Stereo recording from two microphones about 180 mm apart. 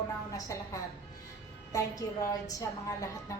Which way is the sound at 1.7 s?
20° left (ahead or behind).